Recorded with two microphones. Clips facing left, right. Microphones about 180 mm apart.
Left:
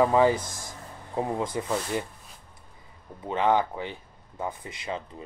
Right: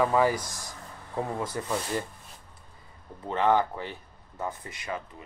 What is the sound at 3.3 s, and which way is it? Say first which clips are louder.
Speech: even; 15° left (ahead or behind).